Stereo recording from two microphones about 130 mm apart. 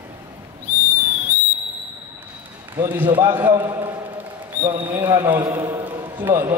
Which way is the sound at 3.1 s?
15° right (ahead or behind).